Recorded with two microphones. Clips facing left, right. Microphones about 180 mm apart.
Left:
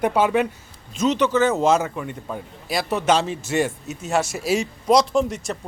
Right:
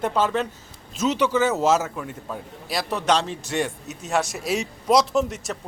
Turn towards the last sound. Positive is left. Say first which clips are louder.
# left 2 dB
turn(degrees=0)  # may be behind; listen again after turning